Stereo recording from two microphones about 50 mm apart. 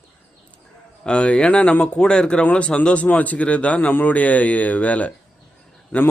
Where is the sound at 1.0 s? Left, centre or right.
Left.